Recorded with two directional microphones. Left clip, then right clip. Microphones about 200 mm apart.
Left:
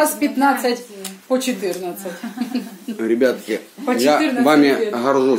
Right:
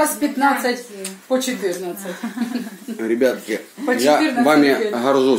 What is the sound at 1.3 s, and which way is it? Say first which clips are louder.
Speech: even; 35° left (ahead or behind).